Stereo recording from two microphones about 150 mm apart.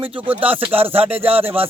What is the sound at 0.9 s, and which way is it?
Speech, 40° right (ahead or behind).